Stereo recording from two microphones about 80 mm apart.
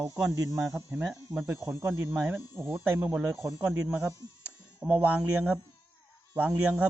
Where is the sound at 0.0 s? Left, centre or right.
Right.